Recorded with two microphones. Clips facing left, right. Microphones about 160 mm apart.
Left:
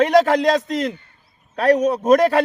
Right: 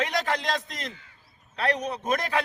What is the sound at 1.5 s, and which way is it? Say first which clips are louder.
Speech: left 12 dB; 40° left (ahead or behind).